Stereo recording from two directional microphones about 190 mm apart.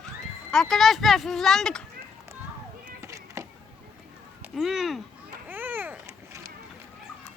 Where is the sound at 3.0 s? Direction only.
15° right (ahead or behind).